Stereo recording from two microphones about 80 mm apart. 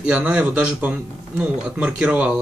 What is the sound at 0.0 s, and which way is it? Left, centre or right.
Speech, centre.